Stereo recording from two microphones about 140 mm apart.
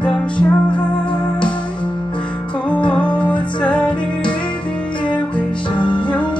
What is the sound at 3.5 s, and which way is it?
Music, 10° left (ahead or behind).